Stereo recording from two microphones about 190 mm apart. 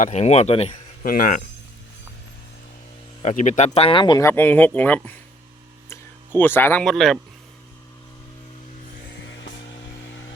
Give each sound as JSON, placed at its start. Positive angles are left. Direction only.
{"t": 0.0, "sound": "speech", "side_deg": 35}
{"t": 1.0, "sound": "speech", "side_deg": 50}
{"t": 3.2, "sound": "speech", "side_deg": 40}
{"t": 5.9, "sound": "a sound", "side_deg": 10}
{"t": 6.8, "sound": "speech", "side_deg": 0}